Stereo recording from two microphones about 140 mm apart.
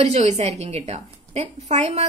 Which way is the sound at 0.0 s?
55° right (ahead or behind).